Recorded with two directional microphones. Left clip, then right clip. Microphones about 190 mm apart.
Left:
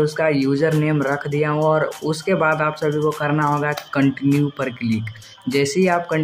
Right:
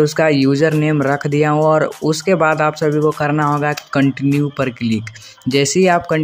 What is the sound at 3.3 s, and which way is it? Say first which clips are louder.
Speech: right 3 dB; 20° right (ahead or behind).